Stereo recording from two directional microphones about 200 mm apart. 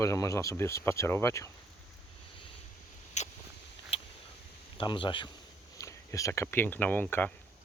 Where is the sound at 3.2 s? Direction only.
35° left (ahead or behind).